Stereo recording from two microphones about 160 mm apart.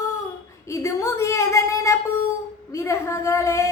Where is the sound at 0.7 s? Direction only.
20° left (ahead or behind).